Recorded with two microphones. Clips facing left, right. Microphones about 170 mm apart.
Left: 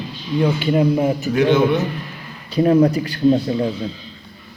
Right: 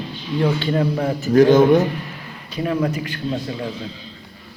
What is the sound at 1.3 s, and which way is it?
Speech, 40° right (ahead or behind).